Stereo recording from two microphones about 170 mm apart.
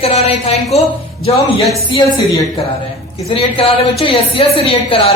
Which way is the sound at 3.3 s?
35° left (ahead or behind).